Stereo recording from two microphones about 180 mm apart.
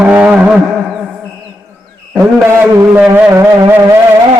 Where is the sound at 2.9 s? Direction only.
10° right (ahead or behind).